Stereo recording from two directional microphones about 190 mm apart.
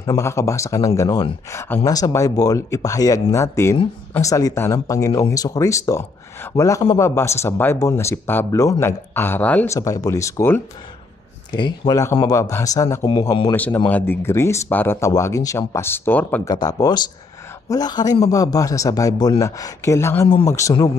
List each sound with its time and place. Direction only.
0.0 s speech: 15° left (ahead or behind)
11.5 s speech: 25° left (ahead or behind)
16.4 s speech: 20° left (ahead or behind)